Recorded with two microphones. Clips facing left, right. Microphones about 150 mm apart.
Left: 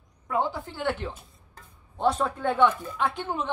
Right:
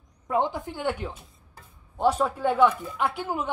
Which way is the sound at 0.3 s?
20° right (ahead or behind).